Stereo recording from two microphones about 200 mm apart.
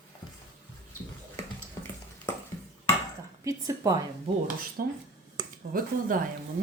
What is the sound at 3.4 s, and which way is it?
Speech, 15° right (ahead or behind).